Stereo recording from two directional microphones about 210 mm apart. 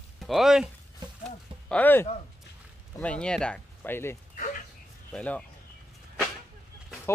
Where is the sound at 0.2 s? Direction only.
Centre (ahead or behind).